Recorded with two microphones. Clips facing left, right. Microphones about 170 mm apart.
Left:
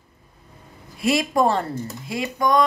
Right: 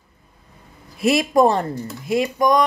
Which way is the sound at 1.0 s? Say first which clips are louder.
Right 4 dB; 20° right (ahead or behind).